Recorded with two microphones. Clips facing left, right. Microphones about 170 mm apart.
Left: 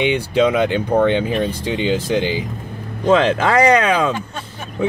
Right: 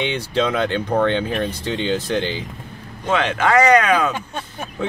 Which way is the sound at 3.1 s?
35° left (ahead or behind).